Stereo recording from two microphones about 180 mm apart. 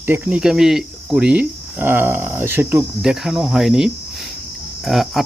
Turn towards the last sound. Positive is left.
turn(degrees=0)  # may be behind; listen again after turning